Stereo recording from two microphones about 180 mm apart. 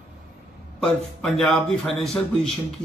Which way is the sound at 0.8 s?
Centre (ahead or behind).